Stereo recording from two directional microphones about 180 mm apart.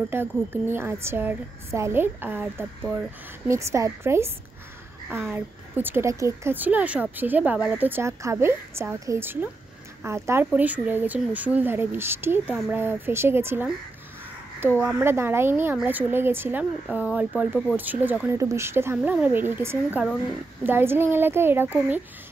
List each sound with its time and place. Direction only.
0.1 s a woman's voice: 10° right (ahead or behind)
14.9 s a woman's voice: 10° right (ahead or behind)